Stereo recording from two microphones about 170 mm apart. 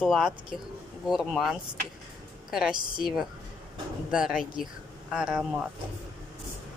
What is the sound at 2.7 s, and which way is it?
Speech, 25° right (ahead or behind).